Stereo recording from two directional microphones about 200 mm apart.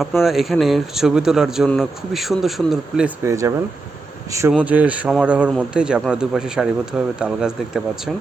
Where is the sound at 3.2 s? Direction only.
15° right (ahead or behind).